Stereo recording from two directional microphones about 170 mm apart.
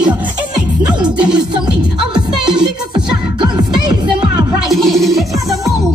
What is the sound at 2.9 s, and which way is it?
Music, 25° right (ahead or behind).